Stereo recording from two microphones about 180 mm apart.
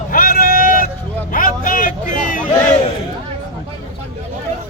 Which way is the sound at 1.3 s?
50° left (ahead or behind).